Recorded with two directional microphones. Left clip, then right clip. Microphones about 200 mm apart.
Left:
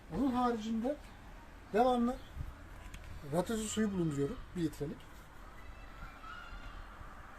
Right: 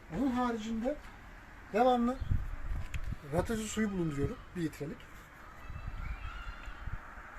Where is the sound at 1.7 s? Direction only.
15° right (ahead or behind).